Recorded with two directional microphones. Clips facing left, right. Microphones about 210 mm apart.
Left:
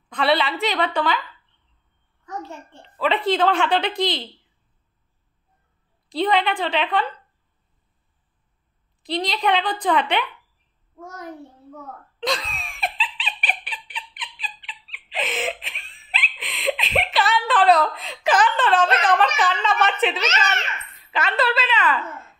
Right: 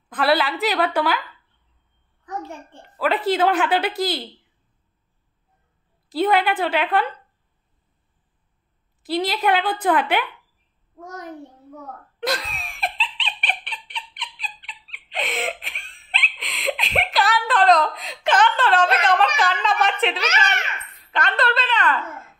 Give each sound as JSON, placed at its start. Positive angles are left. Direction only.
{"t": 0.1, "sound": "a woman's voice", "side_deg": 0}
{"t": 2.2, "sound": "a child's voice", "side_deg": -15}
{"t": 3.1, "sound": "a woman's voice", "side_deg": -5}
{"t": 6.0, "sound": "a woman's voice", "side_deg": -5}
{"t": 9.0, "sound": "a woman's voice", "side_deg": -5}
{"t": 12.2, "sound": "laughter", "side_deg": -5}
{"t": 18.9, "sound": "a woman's voice", "side_deg": 0}